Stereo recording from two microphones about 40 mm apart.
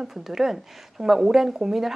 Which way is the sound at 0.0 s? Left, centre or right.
Centre.